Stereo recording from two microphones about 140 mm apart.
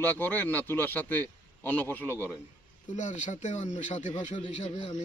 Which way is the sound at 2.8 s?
60° left (ahead or behind).